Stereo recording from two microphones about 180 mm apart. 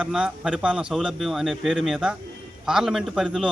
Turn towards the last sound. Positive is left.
turn(degrees=-5)  # may be behind; listen again after turning